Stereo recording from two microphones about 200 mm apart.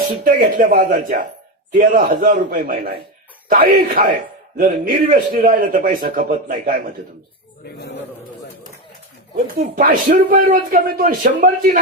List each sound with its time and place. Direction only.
0.3 s speech: 45° right (ahead or behind)
9.3 s speech: 45° right (ahead or behind)